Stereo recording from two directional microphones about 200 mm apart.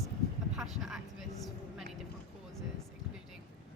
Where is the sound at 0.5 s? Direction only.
Centre (ahead or behind).